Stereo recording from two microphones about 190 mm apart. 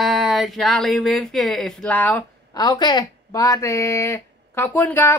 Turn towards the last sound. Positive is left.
turn(degrees=10)  # may be behind; listen again after turning